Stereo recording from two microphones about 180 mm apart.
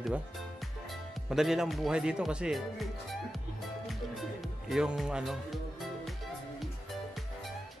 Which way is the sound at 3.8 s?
Centre (ahead or behind).